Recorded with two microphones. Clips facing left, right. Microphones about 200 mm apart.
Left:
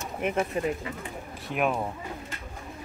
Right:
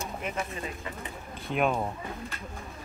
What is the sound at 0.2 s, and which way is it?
Speech, 60° left (ahead or behind).